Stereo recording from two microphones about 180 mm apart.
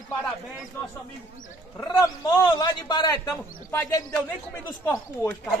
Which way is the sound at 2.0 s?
25° left (ahead or behind).